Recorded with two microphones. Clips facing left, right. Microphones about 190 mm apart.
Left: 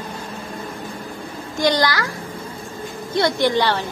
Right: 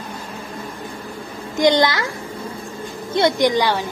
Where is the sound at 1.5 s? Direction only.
20° right (ahead or behind).